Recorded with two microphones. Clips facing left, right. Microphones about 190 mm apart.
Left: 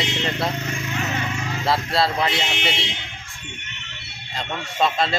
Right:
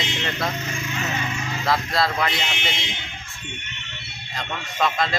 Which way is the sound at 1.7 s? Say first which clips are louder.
Left 1 dB; 30° left (ahead or behind).